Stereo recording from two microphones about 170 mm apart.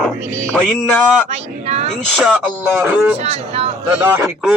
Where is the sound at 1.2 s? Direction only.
45° right (ahead or behind).